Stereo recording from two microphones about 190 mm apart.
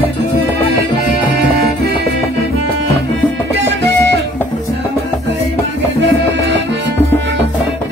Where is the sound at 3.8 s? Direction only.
65° right (ahead or behind).